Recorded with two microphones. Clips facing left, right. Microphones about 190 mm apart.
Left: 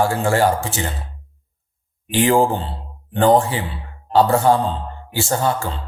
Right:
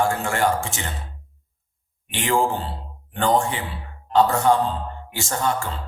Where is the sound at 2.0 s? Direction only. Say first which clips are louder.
Left 6 dB; 35° left (ahead or behind).